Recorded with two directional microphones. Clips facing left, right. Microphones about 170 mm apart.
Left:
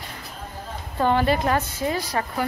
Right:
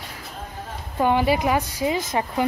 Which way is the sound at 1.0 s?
10° right (ahead or behind).